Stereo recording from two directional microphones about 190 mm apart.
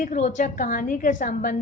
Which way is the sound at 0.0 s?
40° left (ahead or behind).